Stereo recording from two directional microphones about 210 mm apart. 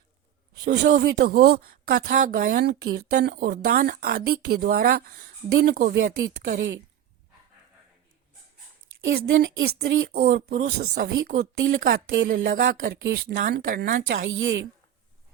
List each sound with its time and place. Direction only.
0.6 s speech: 50° right (ahead or behind)
9.0 s speech: 60° right (ahead or behind); by 14.2 s 45° right (ahead or behind)
14.2 s speech: 65° right (ahead or behind)